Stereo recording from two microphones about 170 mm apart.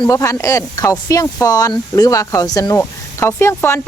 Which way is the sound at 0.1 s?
15° left (ahead or behind).